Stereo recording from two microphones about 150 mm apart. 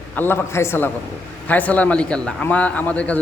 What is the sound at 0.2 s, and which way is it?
A man's voice, 15° left (ahead or behind).